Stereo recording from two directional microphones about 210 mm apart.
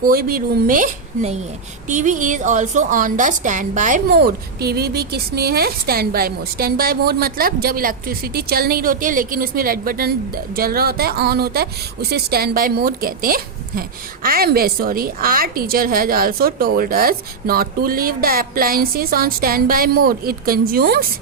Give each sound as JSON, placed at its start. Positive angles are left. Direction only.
{"t": 0.0, "sound": "a woman's voice", "side_deg": -45}